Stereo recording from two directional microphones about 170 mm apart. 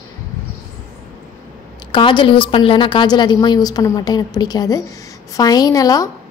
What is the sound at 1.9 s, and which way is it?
A woman's voice, 30° left (ahead or behind).